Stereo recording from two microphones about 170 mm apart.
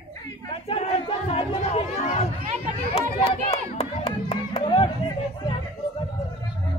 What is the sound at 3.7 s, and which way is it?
Music, 35° left (ahead or behind).